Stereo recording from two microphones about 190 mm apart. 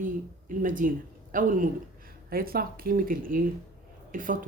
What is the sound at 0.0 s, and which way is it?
A woman's voice, 45° right (ahead or behind).